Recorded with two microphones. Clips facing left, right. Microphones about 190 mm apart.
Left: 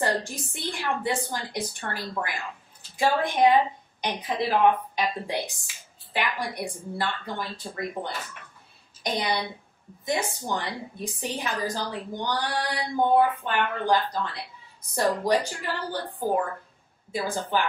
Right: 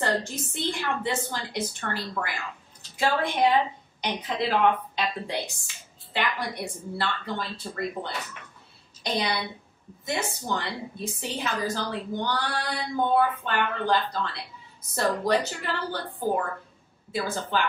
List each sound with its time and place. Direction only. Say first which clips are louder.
0.6 s a woman's voice: right 1 dB; 15° left (ahead or behind)